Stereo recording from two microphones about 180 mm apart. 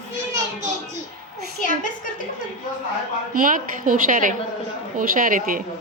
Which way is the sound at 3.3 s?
50° right (ahead or behind).